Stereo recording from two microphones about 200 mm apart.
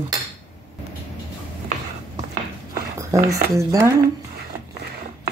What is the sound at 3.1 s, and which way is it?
Speech, 15° right (ahead or behind).